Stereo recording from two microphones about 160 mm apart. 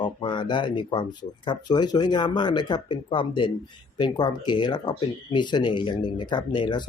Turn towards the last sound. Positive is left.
turn(degrees=30)  # may be behind; listen again after turning